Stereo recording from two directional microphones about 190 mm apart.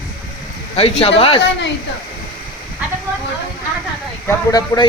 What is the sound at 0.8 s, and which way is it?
Speech, 30° left (ahead or behind).